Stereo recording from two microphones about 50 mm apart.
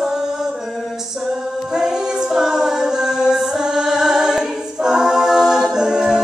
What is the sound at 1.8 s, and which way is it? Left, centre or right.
A capella, centre.